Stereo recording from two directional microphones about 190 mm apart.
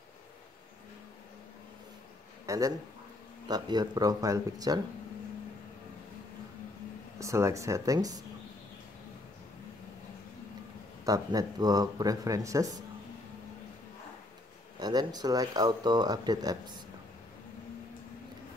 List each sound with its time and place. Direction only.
2.4 s a sound: 15° right (ahead or behind)
3.4 s speech: 20° right (ahead or behind)
7.2 s speech: 15° right (ahead or behind)
11.1 s speech: 20° right (ahead or behind)
14.8 s speech: 20° right (ahead or behind)